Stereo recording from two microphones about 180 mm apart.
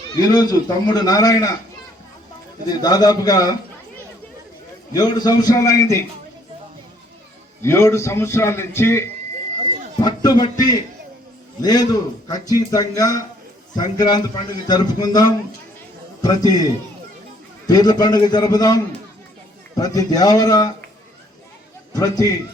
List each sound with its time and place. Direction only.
0.2 s a man's voice: 20° left (ahead or behind)
2.6 s a man's voice: 20° left (ahead or behind)
4.9 s a man's voice: 20° left (ahead or behind)
7.6 s a man's voice: 15° left (ahead or behind)
17.7 s a man's voice: 20° left (ahead or behind)
21.9 s a man's voice: 20° left (ahead or behind)